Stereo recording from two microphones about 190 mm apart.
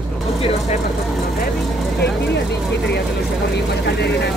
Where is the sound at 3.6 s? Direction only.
65° left (ahead or behind).